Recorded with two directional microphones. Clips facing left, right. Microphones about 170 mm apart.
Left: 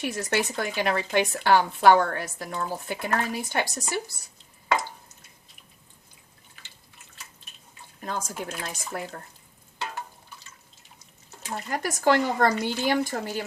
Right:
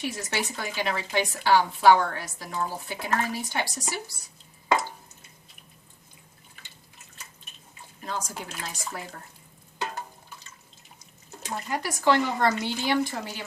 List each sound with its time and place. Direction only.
0.0 s speech: 55° left (ahead or behind)
8.0 s speech: 50° left (ahead or behind)
11.7 s speech: 45° left (ahead or behind)